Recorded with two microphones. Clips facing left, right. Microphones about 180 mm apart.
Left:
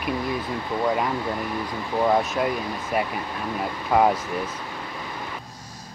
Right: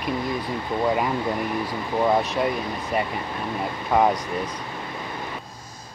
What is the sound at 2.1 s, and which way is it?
Speech, centre (ahead or behind).